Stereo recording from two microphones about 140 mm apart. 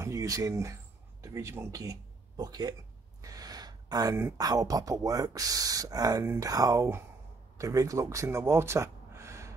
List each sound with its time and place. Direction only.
0.0 s speech: 25° right (ahead or behind)